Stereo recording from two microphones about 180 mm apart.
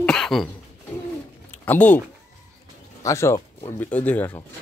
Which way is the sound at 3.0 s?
15° left (ahead or behind).